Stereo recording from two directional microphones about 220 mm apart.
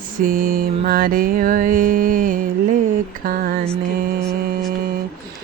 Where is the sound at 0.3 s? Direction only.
40° right (ahead or behind).